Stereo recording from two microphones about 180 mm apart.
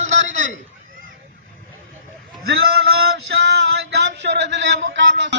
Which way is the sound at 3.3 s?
70° right (ahead or behind).